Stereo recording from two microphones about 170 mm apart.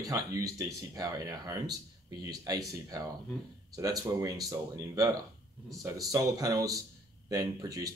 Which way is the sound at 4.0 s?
20° right (ahead or behind).